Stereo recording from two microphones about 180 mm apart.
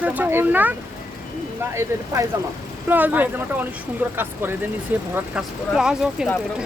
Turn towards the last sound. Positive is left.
turn(degrees=-5)  # may be behind; listen again after turning